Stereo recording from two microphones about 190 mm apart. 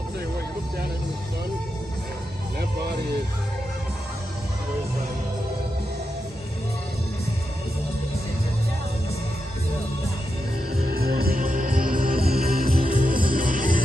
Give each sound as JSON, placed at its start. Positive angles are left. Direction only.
{"t": 10.9, "sound": "music", "side_deg": -55}